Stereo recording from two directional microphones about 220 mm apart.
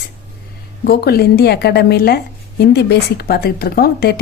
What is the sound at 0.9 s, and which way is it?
A woman's voice, 45° left (ahead or behind).